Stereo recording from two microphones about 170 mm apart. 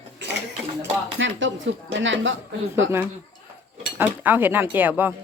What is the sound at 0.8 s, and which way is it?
Speech, 90° right.